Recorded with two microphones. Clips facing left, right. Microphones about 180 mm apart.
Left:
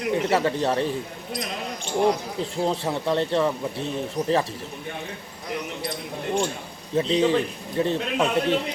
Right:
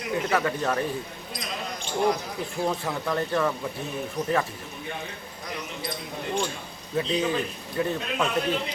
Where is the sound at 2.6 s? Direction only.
30° left (ahead or behind).